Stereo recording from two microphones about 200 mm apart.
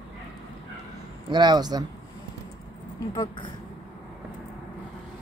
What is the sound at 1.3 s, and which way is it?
Speech, 20° right (ahead or behind).